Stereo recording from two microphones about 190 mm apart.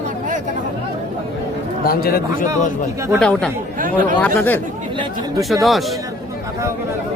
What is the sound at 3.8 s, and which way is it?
Speech, 45° right (ahead or behind).